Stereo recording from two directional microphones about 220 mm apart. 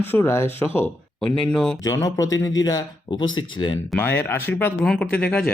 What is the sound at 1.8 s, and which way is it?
Speech, 15° left (ahead or behind).